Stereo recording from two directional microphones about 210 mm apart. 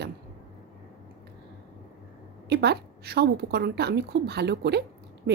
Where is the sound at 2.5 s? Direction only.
50° right (ahead or behind).